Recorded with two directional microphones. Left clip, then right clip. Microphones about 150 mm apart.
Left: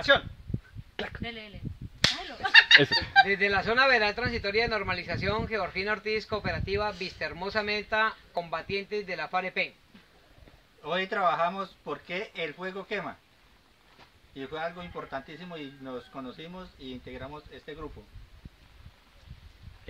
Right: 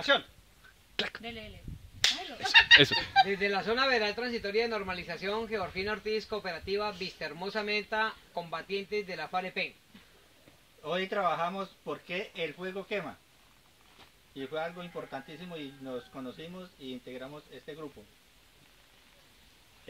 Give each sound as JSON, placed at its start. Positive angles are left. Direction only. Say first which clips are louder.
{"t": 0.1, "sound": "a man's voice", "louder": "left 3 dB", "side_deg": 0}
{"t": 2.5, "sound": "speech", "louder": "left 2 dB", "side_deg": -10}
{"t": 3.3, "sound": "a man's voice", "louder": "left 4 dB", "side_deg": 20}
{"t": 10.8, "sound": "a man's voice", "louder": "left 3 dB", "side_deg": 0}
{"t": 14.3, "sound": "a man's voice", "louder": "left 1 dB", "side_deg": 0}